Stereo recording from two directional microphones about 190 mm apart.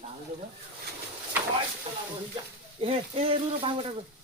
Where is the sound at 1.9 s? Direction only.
30° right (ahead or behind).